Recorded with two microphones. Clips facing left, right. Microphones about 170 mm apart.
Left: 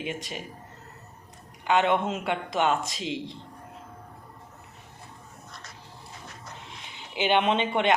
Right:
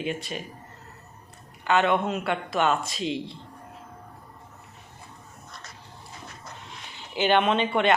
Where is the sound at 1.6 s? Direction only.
15° left (ahead or behind).